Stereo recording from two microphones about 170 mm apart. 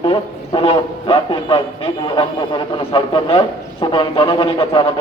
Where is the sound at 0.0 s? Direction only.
30° left (ahead or behind).